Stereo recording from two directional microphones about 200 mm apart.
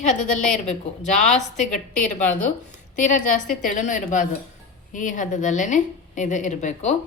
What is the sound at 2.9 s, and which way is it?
A woman's voice, 40° left (ahead or behind).